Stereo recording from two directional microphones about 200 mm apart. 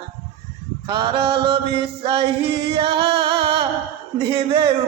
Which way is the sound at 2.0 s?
25° right (ahead or behind).